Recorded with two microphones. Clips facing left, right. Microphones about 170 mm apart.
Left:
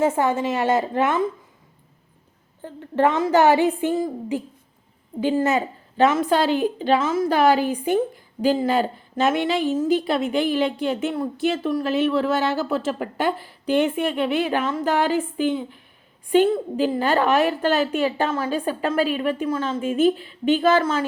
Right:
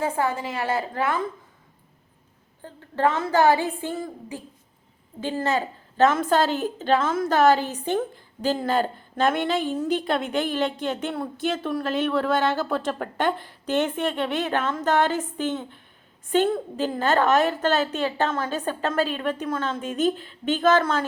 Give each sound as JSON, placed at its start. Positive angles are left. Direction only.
{"t": 0.0, "sound": "a woman's voice", "side_deg": 25}
{"t": 2.9, "sound": "a woman's voice", "side_deg": 20}
{"t": 5.2, "sound": "a woman's voice", "side_deg": 15}